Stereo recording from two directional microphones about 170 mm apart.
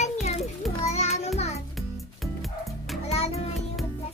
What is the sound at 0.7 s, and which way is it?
Child singing, 40° left (ahead or behind).